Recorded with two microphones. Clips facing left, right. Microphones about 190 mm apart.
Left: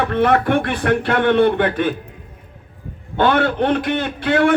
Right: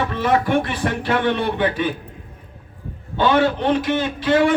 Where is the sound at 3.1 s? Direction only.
55° left (ahead or behind).